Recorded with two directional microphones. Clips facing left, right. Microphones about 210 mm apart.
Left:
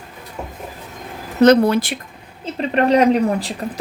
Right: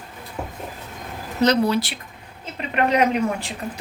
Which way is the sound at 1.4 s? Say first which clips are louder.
Left 7 dB; 55° left (ahead or behind).